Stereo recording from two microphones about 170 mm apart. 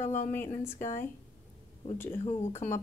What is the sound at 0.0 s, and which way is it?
Speech, 50° left (ahead or behind).